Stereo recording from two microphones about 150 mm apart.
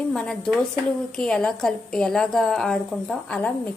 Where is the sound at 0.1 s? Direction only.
5° left (ahead or behind).